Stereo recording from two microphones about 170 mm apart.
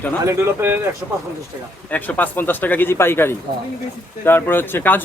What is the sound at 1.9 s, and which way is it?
Speech, 10° left (ahead or behind).